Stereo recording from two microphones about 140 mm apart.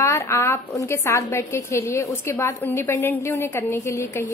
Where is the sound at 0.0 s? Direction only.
20° left (ahead or behind).